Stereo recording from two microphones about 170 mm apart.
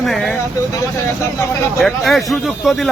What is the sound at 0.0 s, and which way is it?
Vehicle, centre (ahead or behind).